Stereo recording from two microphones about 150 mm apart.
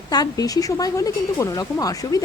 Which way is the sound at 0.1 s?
25° left (ahead or behind).